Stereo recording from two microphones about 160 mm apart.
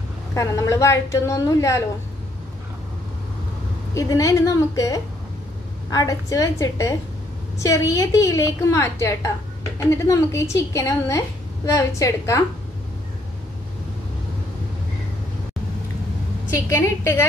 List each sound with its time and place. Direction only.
0.3 s a woman's voice: 20° left (ahead or behind)
3.9 s a woman's voice: 20° left (ahead or behind)
16.4 s a woman's voice: 20° left (ahead or behind)